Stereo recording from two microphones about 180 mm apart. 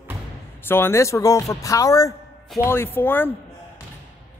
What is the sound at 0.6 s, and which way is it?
A man's voice, 10° left (ahead or behind).